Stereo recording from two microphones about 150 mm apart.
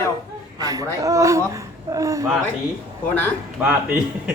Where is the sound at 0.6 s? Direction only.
25° right (ahead or behind).